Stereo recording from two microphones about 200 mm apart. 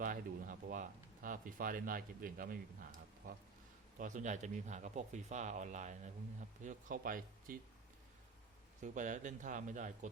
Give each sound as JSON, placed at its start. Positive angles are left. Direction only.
{"t": 0.0, "sound": "speech", "side_deg": -40}
{"t": 8.8, "sound": "speech", "side_deg": -40}